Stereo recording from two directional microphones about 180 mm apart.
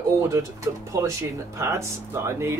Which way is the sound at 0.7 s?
15° right (ahead or behind).